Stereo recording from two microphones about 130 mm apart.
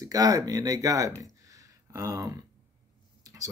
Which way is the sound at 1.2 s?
25° right (ahead or behind).